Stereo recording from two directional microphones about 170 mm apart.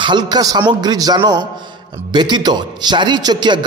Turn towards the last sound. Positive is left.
turn(degrees=-25)  # may be behind; listen again after turning